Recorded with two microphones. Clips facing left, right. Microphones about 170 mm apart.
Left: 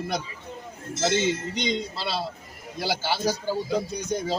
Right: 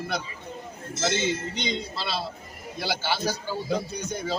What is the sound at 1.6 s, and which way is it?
A man's voice, 40° left (ahead or behind).